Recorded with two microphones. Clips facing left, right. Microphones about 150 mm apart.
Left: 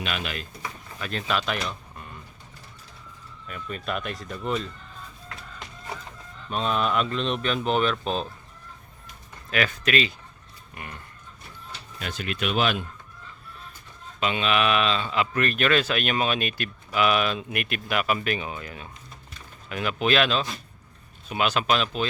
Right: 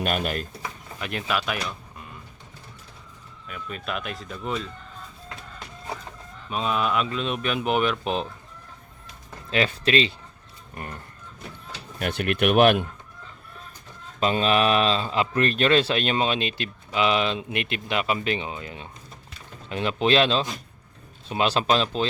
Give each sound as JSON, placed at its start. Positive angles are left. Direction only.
{"t": 0.0, "sound": "speech", "side_deg": -45}
{"t": 0.9, "sound": "speech", "side_deg": -15}
{"t": 3.4, "sound": "speech", "side_deg": 0}
{"t": 6.5, "sound": "speech", "side_deg": -5}
{"t": 9.5, "sound": "speech", "side_deg": -30}
{"t": 10.8, "sound": "speech", "side_deg": -40}
{"t": 11.9, "sound": "speech", "side_deg": -60}
{"t": 14.2, "sound": "speech", "side_deg": -35}